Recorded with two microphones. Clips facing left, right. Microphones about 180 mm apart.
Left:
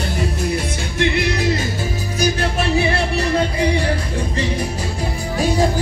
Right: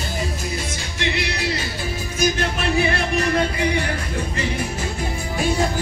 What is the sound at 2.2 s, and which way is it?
Music, 35° left (ahead or behind).